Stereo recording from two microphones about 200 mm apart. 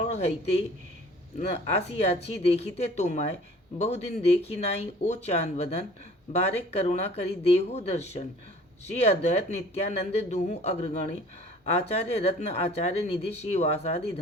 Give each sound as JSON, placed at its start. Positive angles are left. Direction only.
{"t": 0.1, "sound": "speech", "side_deg": 30}